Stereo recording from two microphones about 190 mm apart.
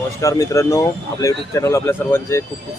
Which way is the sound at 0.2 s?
15° left (ahead or behind).